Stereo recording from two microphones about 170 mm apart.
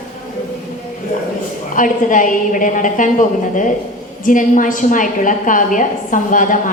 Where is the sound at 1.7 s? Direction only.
50° left (ahead or behind).